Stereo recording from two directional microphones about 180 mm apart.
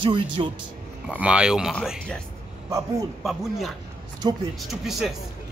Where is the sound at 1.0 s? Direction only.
5° right (ahead or behind).